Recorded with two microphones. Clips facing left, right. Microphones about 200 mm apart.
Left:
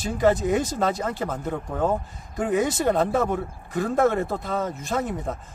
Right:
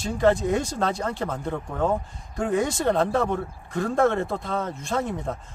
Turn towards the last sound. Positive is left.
turn(degrees=5)  # may be behind; listen again after turning